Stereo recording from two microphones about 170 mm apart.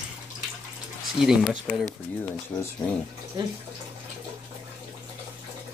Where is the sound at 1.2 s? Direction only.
5° right (ahead or behind).